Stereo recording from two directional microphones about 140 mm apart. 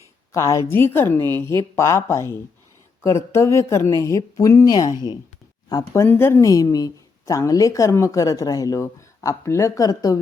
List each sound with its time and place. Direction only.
0.3 s a woman's voice: 20° left (ahead or behind)